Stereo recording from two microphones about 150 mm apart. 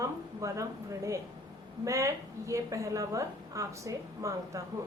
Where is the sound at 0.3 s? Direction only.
20° right (ahead or behind).